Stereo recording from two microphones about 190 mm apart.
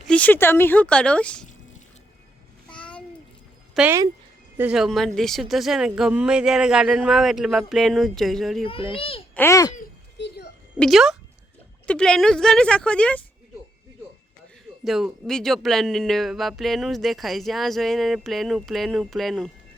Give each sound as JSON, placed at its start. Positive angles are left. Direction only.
{"t": 0.1, "sound": "speech", "side_deg": 10}
{"t": 2.6, "sound": "babbling", "side_deg": 5}
{"t": 3.8, "sound": "speech", "side_deg": -10}
{"t": 8.6, "sound": "a child's voice", "side_deg": 30}
{"t": 9.3, "sound": "speech", "side_deg": 15}
{"t": 10.2, "sound": "a sound", "side_deg": 65}
{"t": 10.8, "sound": "speech", "side_deg": 0}
{"t": 14.8, "sound": "speech", "side_deg": 0}